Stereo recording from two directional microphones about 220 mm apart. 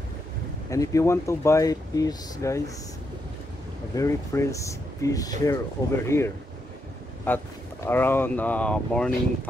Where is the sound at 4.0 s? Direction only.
15° left (ahead or behind).